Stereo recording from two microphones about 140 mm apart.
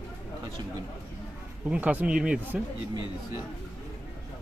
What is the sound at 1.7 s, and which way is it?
Speech, 10° right (ahead or behind).